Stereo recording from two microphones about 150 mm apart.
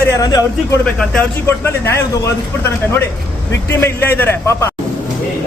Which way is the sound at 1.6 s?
20° left (ahead or behind).